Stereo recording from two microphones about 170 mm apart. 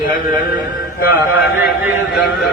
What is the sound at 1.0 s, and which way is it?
Speech, 10° right (ahead or behind).